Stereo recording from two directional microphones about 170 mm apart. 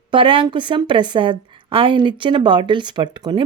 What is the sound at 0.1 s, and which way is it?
A woman's voice, 30° right (ahead or behind).